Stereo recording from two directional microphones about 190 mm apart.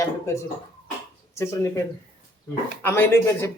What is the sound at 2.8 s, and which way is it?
Speech, 10° left (ahead or behind).